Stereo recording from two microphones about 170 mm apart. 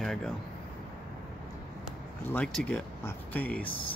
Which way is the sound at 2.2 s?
5° left (ahead or behind).